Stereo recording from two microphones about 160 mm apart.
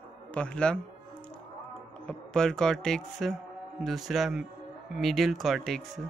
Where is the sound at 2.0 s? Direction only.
5° left (ahead or behind).